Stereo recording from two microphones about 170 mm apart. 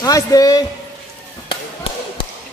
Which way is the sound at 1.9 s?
35° left (ahead or behind).